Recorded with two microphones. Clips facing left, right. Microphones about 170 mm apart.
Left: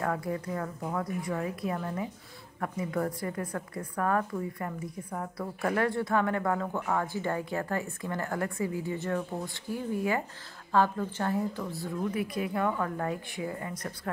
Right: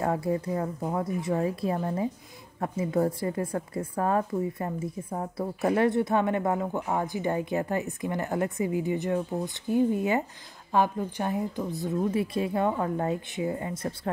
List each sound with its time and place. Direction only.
0.0 s a woman's voice: 25° right (ahead or behind)